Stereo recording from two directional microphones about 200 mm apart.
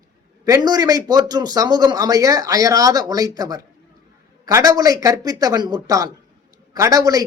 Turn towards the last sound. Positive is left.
turn(degrees=-20)  # may be behind; listen again after turning